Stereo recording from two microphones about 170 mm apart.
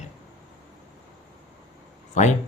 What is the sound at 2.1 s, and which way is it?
Speech, 45° left (ahead or behind).